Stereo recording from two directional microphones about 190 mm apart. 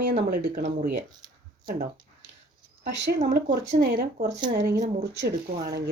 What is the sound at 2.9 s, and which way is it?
Speech, 65° right (ahead or behind).